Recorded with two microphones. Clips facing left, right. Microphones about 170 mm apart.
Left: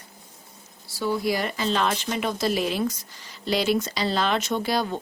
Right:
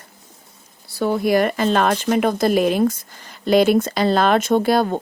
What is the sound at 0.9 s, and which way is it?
Speech, 55° right (ahead or behind).